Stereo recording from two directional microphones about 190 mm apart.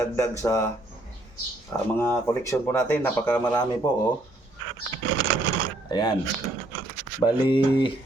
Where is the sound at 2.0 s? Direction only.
15° left (ahead or behind).